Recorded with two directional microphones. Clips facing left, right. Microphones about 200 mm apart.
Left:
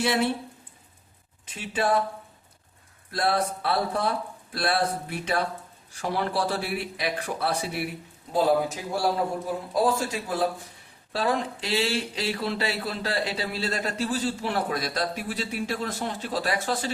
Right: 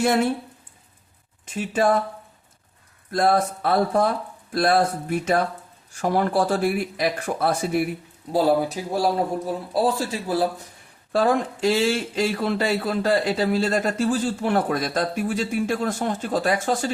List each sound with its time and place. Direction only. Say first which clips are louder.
1.5 s speech: right 5 dB; 45° right (ahead or behind)
3.1 s speech: right 5 dB; 45° right (ahead or behind)
8.3 s a man's voice: right 3 dB; 35° right (ahead or behind)
11.1 s speech: right 6 dB; 50° right (ahead or behind)